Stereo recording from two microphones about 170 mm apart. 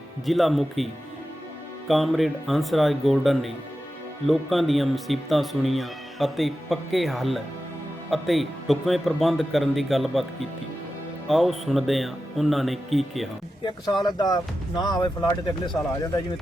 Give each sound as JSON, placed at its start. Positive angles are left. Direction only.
{"t": 0.3, "sound": "speech", "side_deg": 0}
{"t": 1.9, "sound": "speech", "side_deg": 0}
{"t": 14.2, "sound": "speech", "side_deg": 25}